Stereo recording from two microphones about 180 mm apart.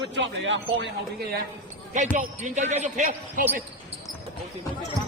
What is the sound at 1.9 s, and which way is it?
Speech, 45° right (ahead or behind).